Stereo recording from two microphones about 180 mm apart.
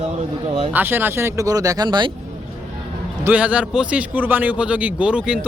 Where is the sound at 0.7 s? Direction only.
10° right (ahead or behind).